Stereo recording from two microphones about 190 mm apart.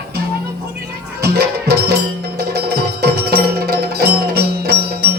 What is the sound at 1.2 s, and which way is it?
Music, 55° right (ahead or behind).